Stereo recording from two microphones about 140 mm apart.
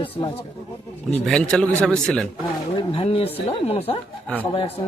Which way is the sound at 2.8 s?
40° left (ahead or behind).